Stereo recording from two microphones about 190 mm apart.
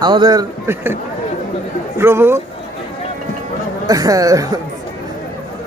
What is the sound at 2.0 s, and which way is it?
Speech, 15° right (ahead or behind).